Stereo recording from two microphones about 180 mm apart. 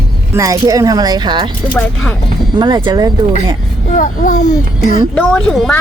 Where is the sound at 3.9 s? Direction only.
45° left (ahead or behind).